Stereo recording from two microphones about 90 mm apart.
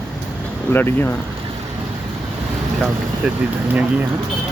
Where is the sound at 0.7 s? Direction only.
20° left (ahead or behind).